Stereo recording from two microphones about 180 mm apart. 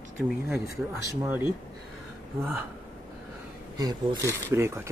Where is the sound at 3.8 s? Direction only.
20° right (ahead or behind).